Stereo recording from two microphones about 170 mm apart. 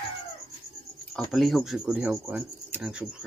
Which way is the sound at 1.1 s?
Centre (ahead or behind).